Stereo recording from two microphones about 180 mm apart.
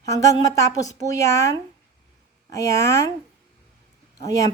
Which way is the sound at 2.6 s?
15° left (ahead or behind).